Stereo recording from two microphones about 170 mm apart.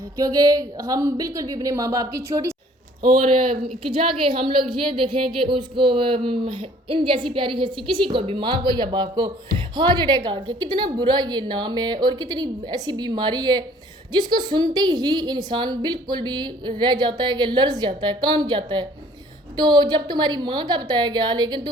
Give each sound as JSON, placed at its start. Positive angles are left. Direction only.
{"t": 0.2, "sound": "a woman's voice", "side_deg": -20}
{"t": 3.8, "sound": "a woman's voice", "side_deg": -30}